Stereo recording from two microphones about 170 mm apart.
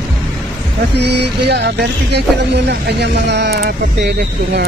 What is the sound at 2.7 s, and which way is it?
Speech, 85° right.